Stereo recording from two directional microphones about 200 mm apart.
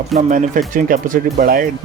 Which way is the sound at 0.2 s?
40° right (ahead or behind).